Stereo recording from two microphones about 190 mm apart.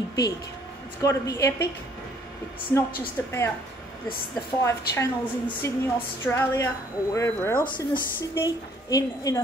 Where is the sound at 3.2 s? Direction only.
15° left (ahead or behind).